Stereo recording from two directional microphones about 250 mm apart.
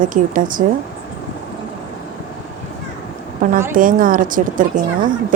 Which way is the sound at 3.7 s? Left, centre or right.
Right.